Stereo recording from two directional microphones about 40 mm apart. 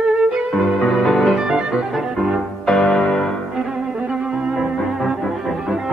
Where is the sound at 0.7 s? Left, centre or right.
Centre.